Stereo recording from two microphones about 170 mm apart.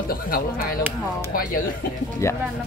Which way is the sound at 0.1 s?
60° left (ahead or behind).